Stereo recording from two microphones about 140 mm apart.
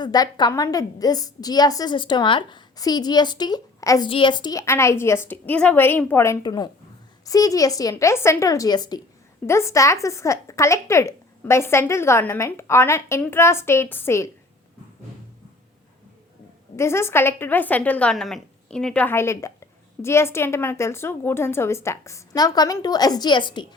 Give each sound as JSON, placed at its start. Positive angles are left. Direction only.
{"t": 0.0, "sound": "a woman's voice", "side_deg": 30}
{"t": 4.1, "sound": "a woman's voice", "side_deg": 35}
{"t": 4.6, "sound": "a woman's voice", "side_deg": 20}
{"t": 6.4, "sound": "a woman's voice", "side_deg": 30}
{"t": 16.7, "sound": "a woman's voice", "side_deg": 20}